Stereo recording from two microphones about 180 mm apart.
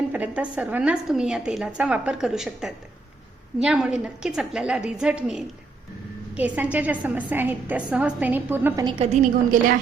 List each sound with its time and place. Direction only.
0.1 s a woman's voice: 10° right (ahead or behind)
8.8 s a woman's voice: 25° right (ahead or behind)
9.1 s a woman's voice: 45° right (ahead or behind)